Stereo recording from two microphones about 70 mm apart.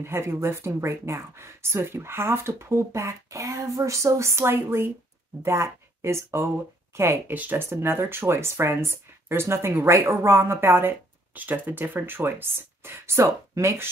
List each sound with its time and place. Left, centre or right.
0.0 s speech: right
7.3 s speech: right
7.7 s speech: right